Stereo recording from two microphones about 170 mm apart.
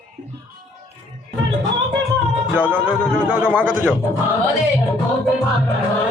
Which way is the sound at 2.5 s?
10° right (ahead or behind).